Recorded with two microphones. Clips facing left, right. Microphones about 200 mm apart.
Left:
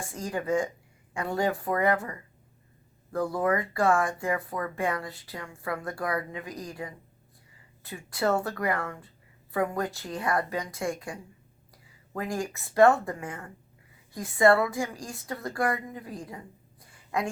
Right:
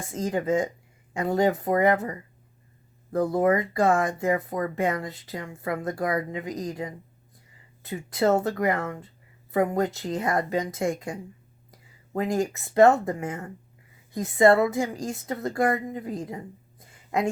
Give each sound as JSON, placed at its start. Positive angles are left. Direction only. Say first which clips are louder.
{"t": 0.1, "sound": "speech", "louder": "right 4 dB", "side_deg": -20}